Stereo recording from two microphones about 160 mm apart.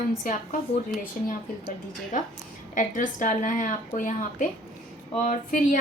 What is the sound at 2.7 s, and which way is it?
A woman's voice, 55° left (ahead or behind).